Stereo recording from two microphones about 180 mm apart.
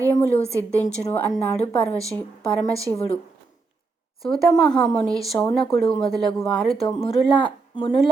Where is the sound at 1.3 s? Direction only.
35° left (ahead or behind).